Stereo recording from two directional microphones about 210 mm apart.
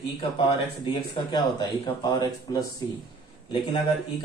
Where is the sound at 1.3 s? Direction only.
20° left (ahead or behind).